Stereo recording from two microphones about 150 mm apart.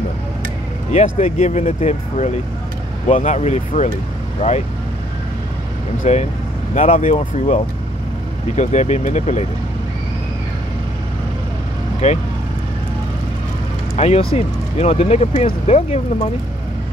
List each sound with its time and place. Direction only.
0.9 s speech: 45° left (ahead or behind)
6.0 s speech: 50° left (ahead or behind)
12.0 s speech: 50° left (ahead or behind)
13.9 s speech: 45° left (ahead or behind)